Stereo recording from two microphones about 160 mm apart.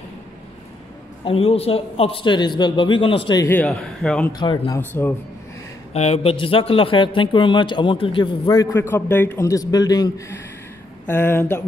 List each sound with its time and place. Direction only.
1.2 s a man's voice: 35° left (ahead or behind)
3.6 s speech: 5° left (ahead or behind)
4.3 s a man's voice: 25° left (ahead or behind)
4.7 s speech: 15° left (ahead or behind)
5.9 s a man's voice: 40° left (ahead or behind)
8.7 s a man's voice: 15° left (ahead or behind)